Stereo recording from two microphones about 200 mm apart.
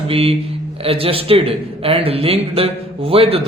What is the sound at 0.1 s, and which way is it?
Speech, 30° right (ahead or behind).